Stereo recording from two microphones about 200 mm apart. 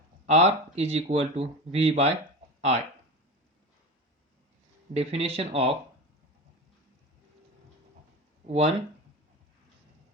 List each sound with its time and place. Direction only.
0.3 s speech: 30° right (ahead or behind)
4.9 s speech: 30° right (ahead or behind)
8.4 s speech: 30° right (ahead or behind)